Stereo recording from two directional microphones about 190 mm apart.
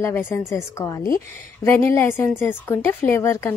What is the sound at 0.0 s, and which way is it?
A woman's voice, 10° left (ahead or behind).